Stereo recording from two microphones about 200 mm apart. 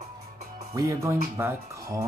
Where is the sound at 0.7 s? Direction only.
15° right (ahead or behind).